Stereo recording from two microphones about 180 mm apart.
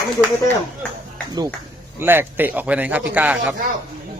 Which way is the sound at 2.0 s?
10° right (ahead or behind).